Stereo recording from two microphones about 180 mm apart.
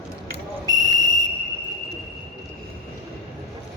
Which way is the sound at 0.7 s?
20° right (ahead or behind).